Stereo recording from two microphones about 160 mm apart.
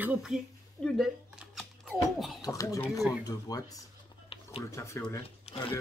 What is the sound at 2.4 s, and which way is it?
Speech, 20° left (ahead or behind).